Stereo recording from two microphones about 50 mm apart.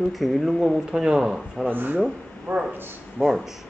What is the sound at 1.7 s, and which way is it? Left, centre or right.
Speech, right.